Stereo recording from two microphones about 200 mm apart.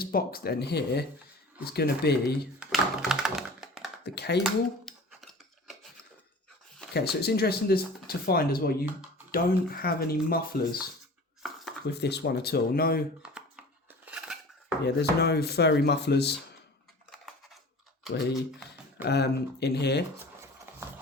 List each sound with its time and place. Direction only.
0.0 s speech: 50° left (ahead or behind)
2.6 s typewriter: centre (ahead or behind)
4.0 s speech: 55° left (ahead or behind)
4.4 s a sound: centre (ahead or behind)
6.9 s speech: 55° left (ahead or behind)
11.4 s dishes: centre (ahead or behind)
11.9 s speech: 55° left (ahead or behind)
13.2 s dishes: 5° right (ahead or behind)
14.8 s speech: 55° left (ahead or behind)
17.1 s scissors: centre (ahead or behind)
18.1 s speech: 55° left (ahead or behind)
20.7 s a sound: 10° right (ahead or behind)